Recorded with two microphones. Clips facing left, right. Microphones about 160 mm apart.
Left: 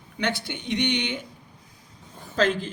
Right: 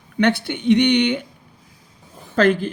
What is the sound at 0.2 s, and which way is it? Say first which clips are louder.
Speech: right 10 dB; 60° right (ahead or behind).